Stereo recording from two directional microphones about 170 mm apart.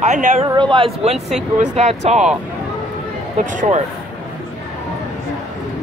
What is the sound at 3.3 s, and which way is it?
Speech, 40° right (ahead or behind).